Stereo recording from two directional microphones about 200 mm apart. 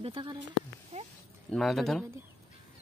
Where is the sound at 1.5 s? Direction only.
Centre (ahead or behind).